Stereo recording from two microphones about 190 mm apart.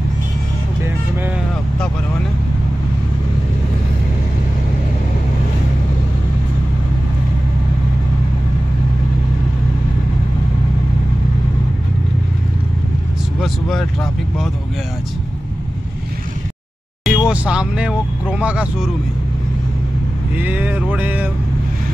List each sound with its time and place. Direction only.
13.4 s vehicle: centre (ahead or behind)
17.0 s vehicle: 5° right (ahead or behind)
18.3 s speech: 5° right (ahead or behind)
20.3 s speech: 10° right (ahead or behind)